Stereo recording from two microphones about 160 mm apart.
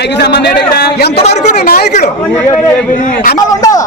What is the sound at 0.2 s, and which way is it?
A man's voice, 85° left.